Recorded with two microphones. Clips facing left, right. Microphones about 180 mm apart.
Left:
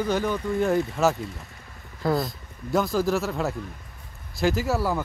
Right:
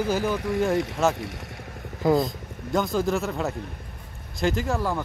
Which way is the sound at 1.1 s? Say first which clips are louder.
Right 1 dB; 80° right.